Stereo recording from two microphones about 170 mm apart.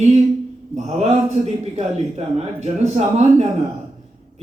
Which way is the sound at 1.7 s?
40° right (ahead or behind).